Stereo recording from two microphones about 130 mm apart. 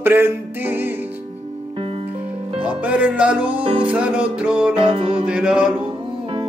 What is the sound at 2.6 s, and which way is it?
Music, 10° right (ahead or behind).